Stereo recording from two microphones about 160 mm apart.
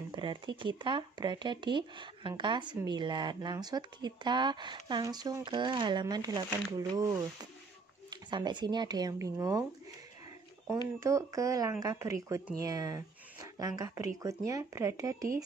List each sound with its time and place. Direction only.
0.1 s speech: 30° right (ahead or behind)
11.0 s speech: 20° right (ahead or behind)